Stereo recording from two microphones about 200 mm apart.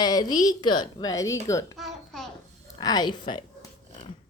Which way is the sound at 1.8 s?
Centre (ahead or behind).